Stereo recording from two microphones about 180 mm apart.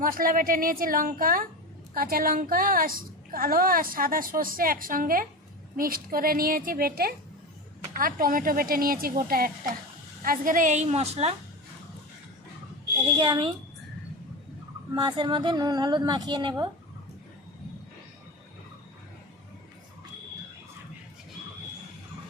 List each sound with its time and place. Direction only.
0.0 s a woman's voice: 50° right (ahead or behind); by 11.3 s 35° right (ahead or behind)
13.1 s a woman's voice: 25° right (ahead or behind)
14.9 s a woman's voice: 25° right (ahead or behind)